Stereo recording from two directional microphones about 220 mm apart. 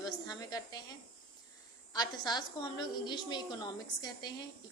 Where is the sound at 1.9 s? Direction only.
20° left (ahead or behind).